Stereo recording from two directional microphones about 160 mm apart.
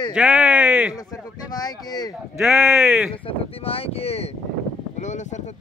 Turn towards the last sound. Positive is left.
turn(degrees=50)  # may be behind; listen again after turning